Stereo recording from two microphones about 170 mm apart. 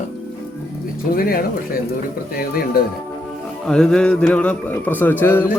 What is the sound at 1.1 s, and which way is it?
Speech, 60° left (ahead or behind).